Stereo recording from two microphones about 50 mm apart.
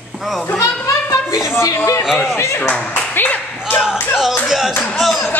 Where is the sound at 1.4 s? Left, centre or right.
Left.